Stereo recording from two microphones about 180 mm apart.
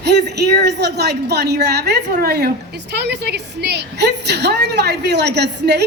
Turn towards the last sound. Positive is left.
turn(degrees=-70)  # may be behind; listen again after turning